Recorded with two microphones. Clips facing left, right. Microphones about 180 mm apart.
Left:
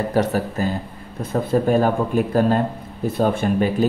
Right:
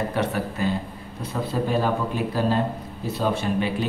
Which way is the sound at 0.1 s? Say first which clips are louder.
Left 5 dB; 40° left (ahead or behind).